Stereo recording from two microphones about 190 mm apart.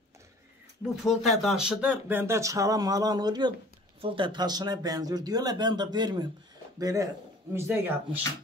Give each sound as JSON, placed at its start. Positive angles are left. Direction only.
{"t": 1.2, "sound": "speech", "side_deg": 0}